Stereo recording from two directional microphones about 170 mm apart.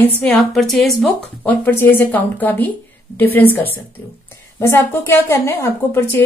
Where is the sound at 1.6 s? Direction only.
10° left (ahead or behind).